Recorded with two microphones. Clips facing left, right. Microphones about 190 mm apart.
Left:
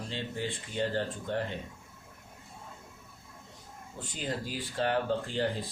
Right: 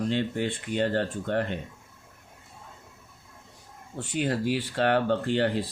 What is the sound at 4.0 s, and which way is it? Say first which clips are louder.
Speech: right 9 dB; 70° right (ahead or behind).